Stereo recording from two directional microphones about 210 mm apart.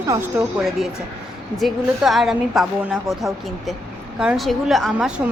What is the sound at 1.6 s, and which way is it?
A woman's voice, centre (ahead or behind).